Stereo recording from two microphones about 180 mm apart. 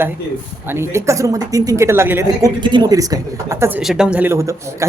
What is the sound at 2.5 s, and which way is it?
Speech, 25° right (ahead or behind).